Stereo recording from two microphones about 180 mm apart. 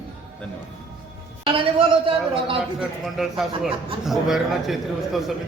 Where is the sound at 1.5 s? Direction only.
30° right (ahead or behind).